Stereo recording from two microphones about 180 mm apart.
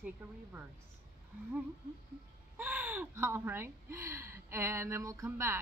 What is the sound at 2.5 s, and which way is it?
Speech, 10° right (ahead or behind).